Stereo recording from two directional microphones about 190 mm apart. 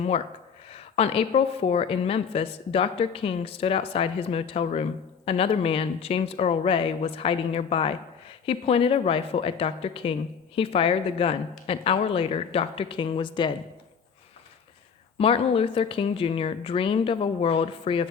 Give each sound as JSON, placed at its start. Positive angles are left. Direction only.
{"t": 0.7, "sound": "a woman's voice", "side_deg": 30}
{"t": 15.2, "sound": "a woman's voice", "side_deg": 30}